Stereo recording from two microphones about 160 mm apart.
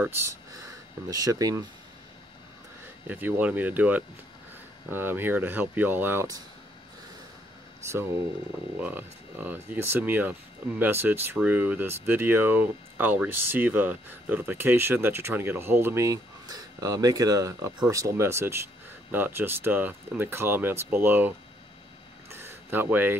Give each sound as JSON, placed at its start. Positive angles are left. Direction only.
{"t": 0.0, "sound": "speech", "side_deg": -15}
{"t": 3.1, "sound": "speech", "side_deg": -10}
{"t": 7.8, "sound": "speech", "side_deg": -15}
{"t": 22.3, "sound": "a sound", "side_deg": -15}